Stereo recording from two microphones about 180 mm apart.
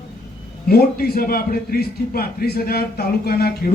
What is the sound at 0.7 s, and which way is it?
A man's voice, 60° left (ahead or behind).